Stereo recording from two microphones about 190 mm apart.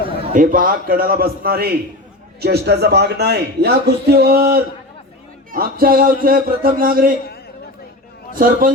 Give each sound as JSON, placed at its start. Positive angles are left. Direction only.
{"t": 0.3, "sound": "a man's voice", "side_deg": -45}
{"t": 8.4, "sound": "a man's voice", "side_deg": -50}